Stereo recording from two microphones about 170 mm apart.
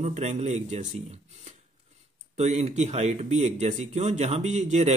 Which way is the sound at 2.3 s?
40° right (ahead or behind).